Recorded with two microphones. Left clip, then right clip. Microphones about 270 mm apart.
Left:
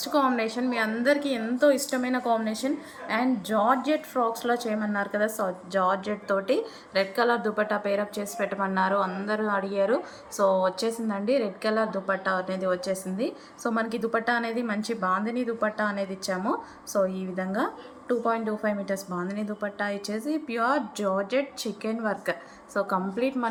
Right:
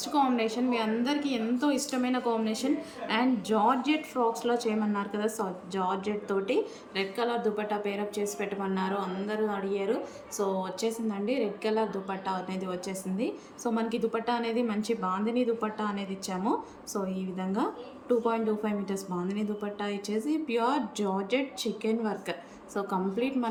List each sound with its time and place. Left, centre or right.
0.0 s a woman's voice: centre